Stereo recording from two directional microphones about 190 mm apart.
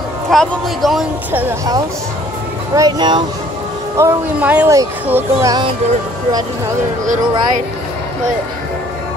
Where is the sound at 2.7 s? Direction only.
20° right (ahead or behind).